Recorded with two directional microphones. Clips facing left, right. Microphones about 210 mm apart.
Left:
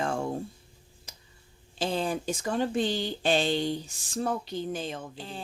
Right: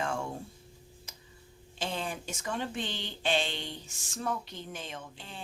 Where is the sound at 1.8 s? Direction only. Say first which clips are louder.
Left 7 dB; 35° left (ahead or behind).